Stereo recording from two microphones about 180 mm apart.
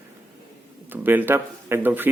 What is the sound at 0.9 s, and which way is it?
Speech, 10° right (ahead or behind).